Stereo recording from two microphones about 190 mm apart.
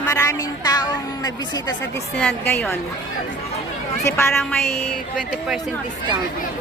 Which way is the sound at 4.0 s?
15° left (ahead or behind).